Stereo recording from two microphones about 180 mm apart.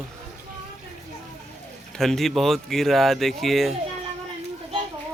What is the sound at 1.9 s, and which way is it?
Speech, centre (ahead or behind).